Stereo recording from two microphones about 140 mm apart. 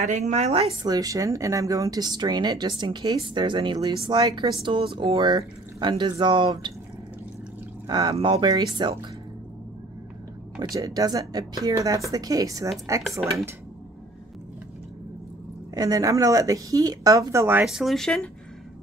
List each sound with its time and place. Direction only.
0.0 s speech: 55° right (ahead or behind)
0.8 s speech: 25° right (ahead or behind)
7.8 s speech: 25° right (ahead or behind)
10.6 s speech: 25° right (ahead or behind)
15.7 s speech: 25° right (ahead or behind)
17.6 s speech: centre (ahead or behind)